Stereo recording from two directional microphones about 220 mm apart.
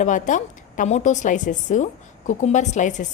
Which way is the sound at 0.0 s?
35° left (ahead or behind).